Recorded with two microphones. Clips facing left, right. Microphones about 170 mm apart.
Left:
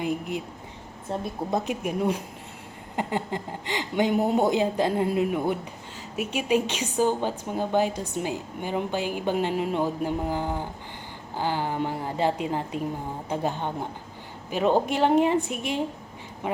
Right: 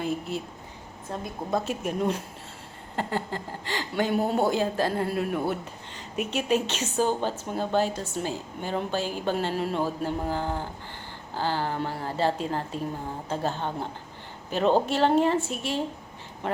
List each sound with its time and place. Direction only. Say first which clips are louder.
0.0 s a woman's voice: left 1 dB; 15° left (ahead or behind)
1.5 s a woman's voice: right 1 dB; 20° left (ahead or behind)